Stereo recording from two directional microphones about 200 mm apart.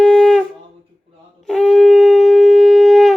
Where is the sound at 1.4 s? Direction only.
5° left (ahead or behind).